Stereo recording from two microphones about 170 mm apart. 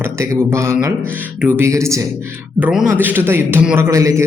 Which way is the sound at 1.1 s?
10° right (ahead or behind).